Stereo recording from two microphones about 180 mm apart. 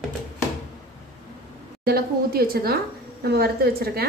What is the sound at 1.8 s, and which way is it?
A woman's voice, 60° right (ahead or behind).